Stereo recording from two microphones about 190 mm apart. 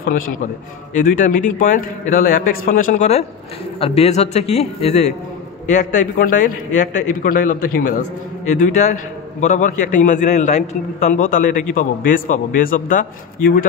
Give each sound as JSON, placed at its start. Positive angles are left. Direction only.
{"t": 0.9, "sound": "a man's voice", "side_deg": 40}